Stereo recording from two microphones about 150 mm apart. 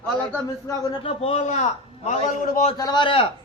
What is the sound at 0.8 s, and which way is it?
A man's voice, 35° left (ahead or behind).